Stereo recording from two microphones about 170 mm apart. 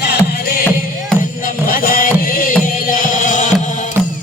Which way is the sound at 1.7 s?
55° left (ahead or behind).